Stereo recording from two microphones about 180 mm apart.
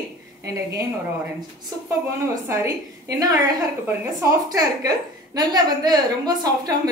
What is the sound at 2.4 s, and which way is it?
A woman's voice, 15° right (ahead or behind).